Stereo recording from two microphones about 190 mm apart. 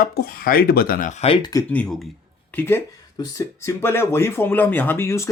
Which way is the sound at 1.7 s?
5° left (ahead or behind).